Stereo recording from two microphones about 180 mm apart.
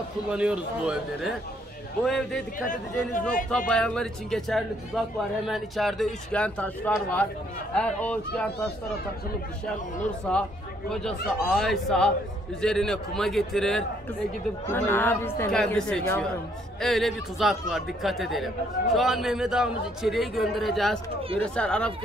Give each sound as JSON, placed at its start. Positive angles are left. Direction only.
{"t": 0.3, "sound": "speech", "side_deg": -5}
{"t": 2.7, "sound": "speech", "side_deg": 50}
{"t": 3.4, "sound": "speech", "side_deg": 5}
{"t": 10.3, "sound": "speech", "side_deg": 5}